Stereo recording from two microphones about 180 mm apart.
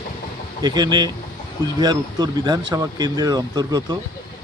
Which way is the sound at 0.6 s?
25° right (ahead or behind).